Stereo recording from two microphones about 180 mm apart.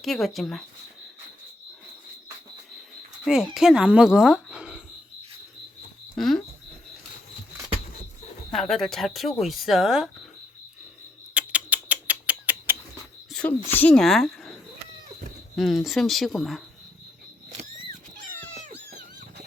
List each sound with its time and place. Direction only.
0.0 s speech: centre (ahead or behind)
3.2 s speech: 5° right (ahead or behind)
6.1 s speech: centre (ahead or behind)
8.5 s speech: centre (ahead or behind)
11.3 s rodents: 10° right (ahead or behind)
13.3 s speech: 5° left (ahead or behind)
15.5 s speech: centre (ahead or behind)
18.9 s a sound: 55° right (ahead or behind)